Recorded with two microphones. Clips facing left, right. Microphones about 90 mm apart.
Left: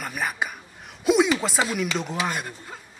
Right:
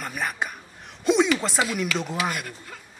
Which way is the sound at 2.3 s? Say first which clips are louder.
Left 2 dB; 25° left (ahead or behind).